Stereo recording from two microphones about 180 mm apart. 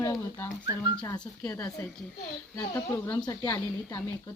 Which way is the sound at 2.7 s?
15° left (ahead or behind).